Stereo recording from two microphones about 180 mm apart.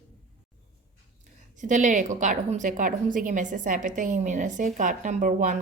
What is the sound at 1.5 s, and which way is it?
A woman's voice, 45° right (ahead or behind).